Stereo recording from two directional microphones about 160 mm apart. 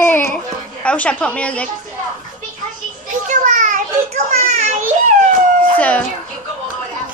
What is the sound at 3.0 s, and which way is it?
Children playing, 50° right (ahead or behind).